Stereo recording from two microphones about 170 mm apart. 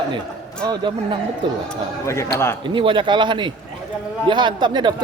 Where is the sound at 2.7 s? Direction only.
30° right (ahead or behind).